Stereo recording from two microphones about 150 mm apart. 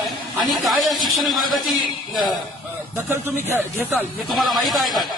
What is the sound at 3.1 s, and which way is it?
Speech, 20° right (ahead or behind).